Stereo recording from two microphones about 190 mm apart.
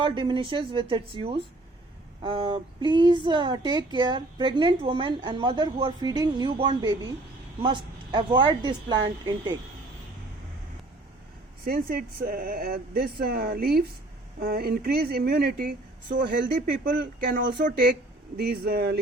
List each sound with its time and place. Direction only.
0.0 s speech: 25° right (ahead or behind)
11.6 s speech: 50° right (ahead or behind)